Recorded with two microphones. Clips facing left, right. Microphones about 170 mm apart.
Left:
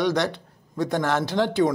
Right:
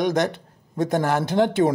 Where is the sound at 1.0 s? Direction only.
15° right (ahead or behind).